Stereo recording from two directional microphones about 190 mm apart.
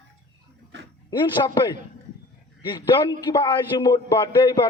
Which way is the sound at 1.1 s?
20° left (ahead or behind).